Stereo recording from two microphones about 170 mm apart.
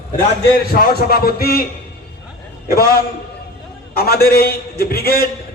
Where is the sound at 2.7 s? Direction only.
60° left (ahead or behind).